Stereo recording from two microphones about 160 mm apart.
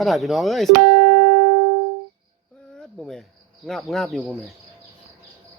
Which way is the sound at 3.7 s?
Centre (ahead or behind).